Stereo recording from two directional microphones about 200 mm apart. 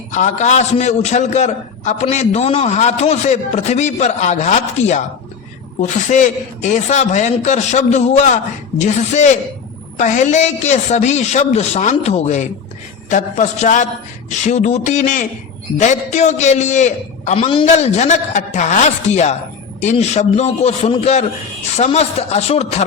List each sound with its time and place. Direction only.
0.1 s a man's voice: 40° left (ahead or behind)